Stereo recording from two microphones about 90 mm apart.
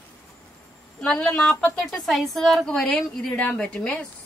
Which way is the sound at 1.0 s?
10° left (ahead or behind).